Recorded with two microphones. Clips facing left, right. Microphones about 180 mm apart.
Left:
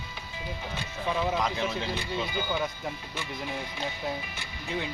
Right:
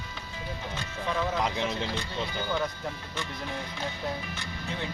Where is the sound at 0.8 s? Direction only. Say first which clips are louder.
Left 1 dB; 15° left (ahead or behind).